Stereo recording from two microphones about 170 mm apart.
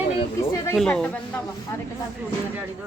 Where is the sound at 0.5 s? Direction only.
15° left (ahead or behind).